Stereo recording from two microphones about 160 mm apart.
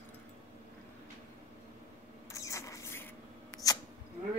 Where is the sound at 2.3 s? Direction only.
20° left (ahead or behind).